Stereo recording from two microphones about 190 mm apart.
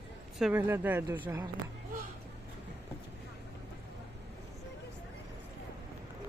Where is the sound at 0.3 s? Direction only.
5° right (ahead or behind).